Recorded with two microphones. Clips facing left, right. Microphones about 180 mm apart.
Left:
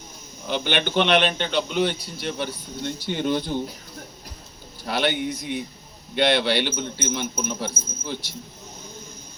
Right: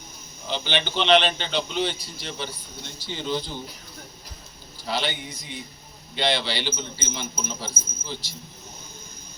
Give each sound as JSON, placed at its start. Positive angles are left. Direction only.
{"t": 0.4, "sound": "speech", "side_deg": 55}
{"t": 4.9, "sound": "speech", "side_deg": 60}